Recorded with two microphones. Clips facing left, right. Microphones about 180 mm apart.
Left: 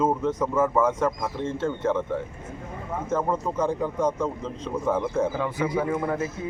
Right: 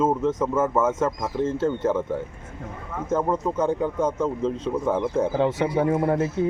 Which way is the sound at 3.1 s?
Centre (ahead or behind).